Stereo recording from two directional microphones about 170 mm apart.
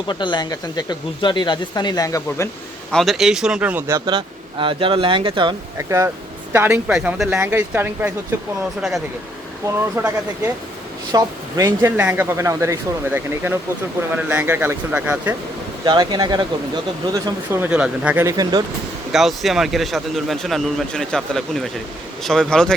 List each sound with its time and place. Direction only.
0.1 s speech: 25° left (ahead or behind)
2.9 s speech: centre (ahead or behind)
4.0 s speech: 30° right (ahead or behind)
5.7 s speech: 15° right (ahead or behind)
9.6 s speech: 15° right (ahead or behind)
11.1 s speech: 20° right (ahead or behind)
15.8 s speech: 25° right (ahead or behind)
17.2 s speech: 15° right (ahead or behind)
19.1 s speech: centre (ahead or behind)